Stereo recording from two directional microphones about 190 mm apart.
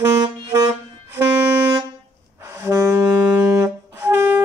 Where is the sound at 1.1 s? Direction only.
10° right (ahead or behind).